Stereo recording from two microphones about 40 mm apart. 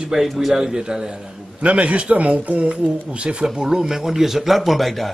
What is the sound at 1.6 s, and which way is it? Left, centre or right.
A man's voice, right.